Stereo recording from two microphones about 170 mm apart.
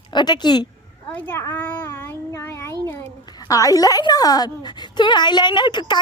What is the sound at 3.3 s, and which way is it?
A woman's voice, 20° left (ahead or behind).